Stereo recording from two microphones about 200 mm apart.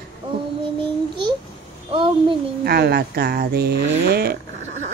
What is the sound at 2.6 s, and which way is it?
Speech, 50° right (ahead or behind).